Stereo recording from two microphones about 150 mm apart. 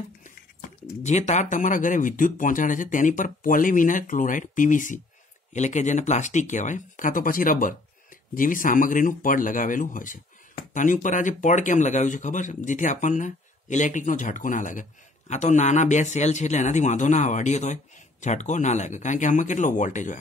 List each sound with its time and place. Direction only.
1.0 s speech: 50° left (ahead or behind)